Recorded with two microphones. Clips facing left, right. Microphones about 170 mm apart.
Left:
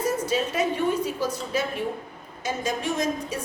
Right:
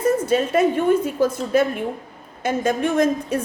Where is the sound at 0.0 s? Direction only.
55° right (ahead or behind).